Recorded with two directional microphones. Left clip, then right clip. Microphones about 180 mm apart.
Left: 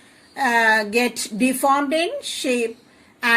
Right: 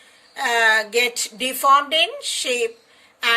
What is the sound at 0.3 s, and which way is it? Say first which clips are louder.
Speech: even; 25° left (ahead or behind).